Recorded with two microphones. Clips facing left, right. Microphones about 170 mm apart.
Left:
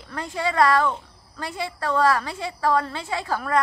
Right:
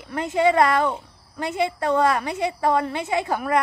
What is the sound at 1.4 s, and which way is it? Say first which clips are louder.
A woman's voice: right 6 dB; 20° right (ahead or behind).